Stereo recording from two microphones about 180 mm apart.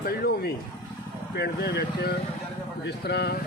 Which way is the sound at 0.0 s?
60° left (ahead or behind).